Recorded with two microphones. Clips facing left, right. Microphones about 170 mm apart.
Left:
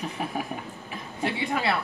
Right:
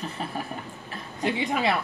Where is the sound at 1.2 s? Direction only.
20° right (ahead or behind).